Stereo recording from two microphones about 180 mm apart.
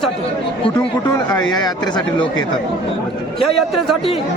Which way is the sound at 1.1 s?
20° left (ahead or behind).